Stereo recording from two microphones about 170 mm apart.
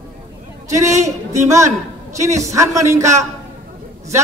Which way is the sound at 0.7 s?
15° right (ahead or behind).